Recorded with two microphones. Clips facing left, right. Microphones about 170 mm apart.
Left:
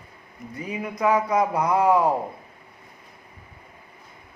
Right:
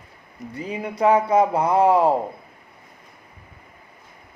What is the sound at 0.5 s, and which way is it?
A man's voice, 30° right (ahead or behind).